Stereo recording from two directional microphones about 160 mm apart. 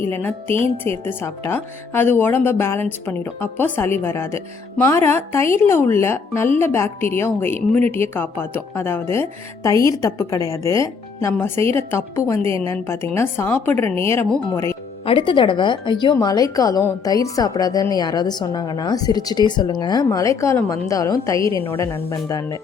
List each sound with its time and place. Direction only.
0.1 s speech: 10° left (ahead or behind)
0.5 s speech: 35° right (ahead or behind)
1.0 s speech: 15° left (ahead or behind)
15.0 s speech: 35° left (ahead or behind)